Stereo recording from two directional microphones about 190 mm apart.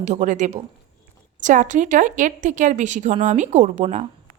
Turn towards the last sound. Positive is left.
turn(degrees=-40)  # may be behind; listen again after turning